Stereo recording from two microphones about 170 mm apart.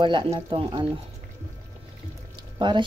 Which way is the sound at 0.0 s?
30° right (ahead or behind).